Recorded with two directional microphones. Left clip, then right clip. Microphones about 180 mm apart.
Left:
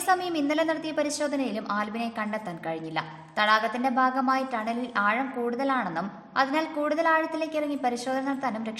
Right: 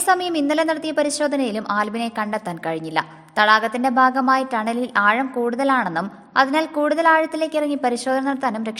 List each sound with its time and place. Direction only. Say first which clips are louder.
0.0 s a woman's voice: right 6 dB; 35° right (ahead or behind)